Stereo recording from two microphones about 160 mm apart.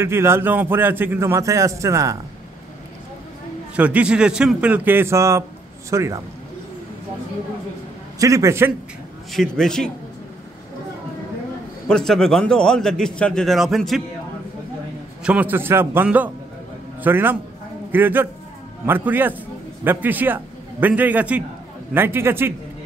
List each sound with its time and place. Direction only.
0.0 s a man's voice: 15° right (ahead or behind)
3.7 s a man's voice: 10° right (ahead or behind)
8.2 s a man's voice: 20° right (ahead or behind)
9.3 s a man's voice: centre (ahead or behind)
11.9 s a man's voice: 5° left (ahead or behind)
15.2 s a man's voice: 10° right (ahead or behind)